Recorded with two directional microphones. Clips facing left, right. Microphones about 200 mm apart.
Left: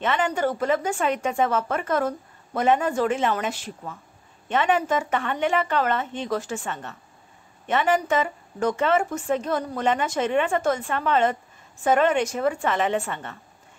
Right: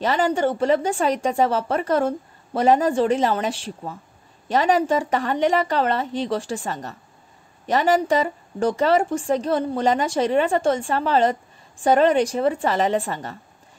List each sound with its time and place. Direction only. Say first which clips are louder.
0.0 s speech: right 3 dB; 35° right (ahead or behind)